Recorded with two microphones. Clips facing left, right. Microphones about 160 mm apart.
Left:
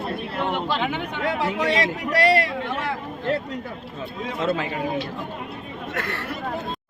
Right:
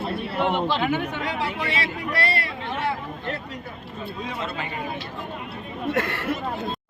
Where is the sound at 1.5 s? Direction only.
90° left.